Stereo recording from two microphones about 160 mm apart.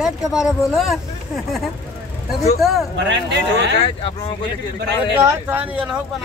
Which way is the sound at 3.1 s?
90° right.